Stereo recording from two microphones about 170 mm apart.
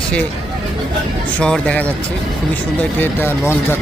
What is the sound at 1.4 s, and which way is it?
Speech, 5° left (ahead or behind).